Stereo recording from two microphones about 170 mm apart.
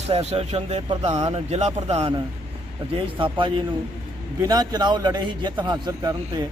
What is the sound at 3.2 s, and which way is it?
A man's voice, 30° right (ahead or behind).